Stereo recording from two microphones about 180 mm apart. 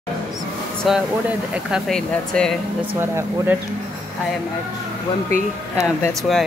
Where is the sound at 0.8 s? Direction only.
Centre (ahead or behind).